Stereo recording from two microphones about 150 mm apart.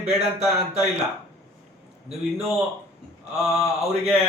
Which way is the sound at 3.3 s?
5° right (ahead or behind).